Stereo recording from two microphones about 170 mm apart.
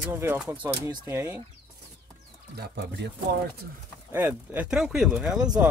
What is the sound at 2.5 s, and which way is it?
Speech, 80° right.